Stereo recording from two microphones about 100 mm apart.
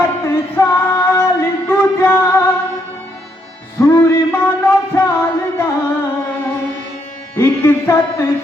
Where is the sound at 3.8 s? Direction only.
25° left (ahead or behind).